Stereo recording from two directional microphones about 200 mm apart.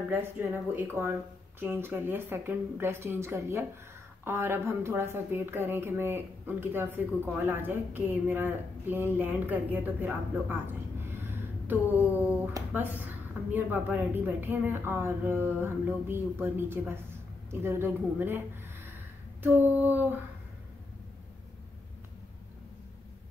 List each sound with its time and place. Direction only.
0.1 s a woman's voice: 10° right (ahead or behind)
19.4 s a woman's voice: 10° right (ahead or behind)